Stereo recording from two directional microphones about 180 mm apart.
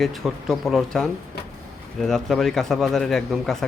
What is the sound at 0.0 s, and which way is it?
Speech, centre (ahead or behind).